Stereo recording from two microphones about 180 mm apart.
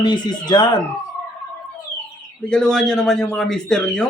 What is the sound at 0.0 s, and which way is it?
Speech, 25° left (ahead or behind).